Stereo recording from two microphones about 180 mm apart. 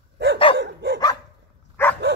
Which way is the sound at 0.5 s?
75° right (ahead or behind).